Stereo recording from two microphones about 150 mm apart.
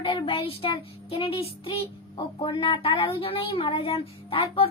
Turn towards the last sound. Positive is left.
turn(degrees=40)  # may be behind; listen again after turning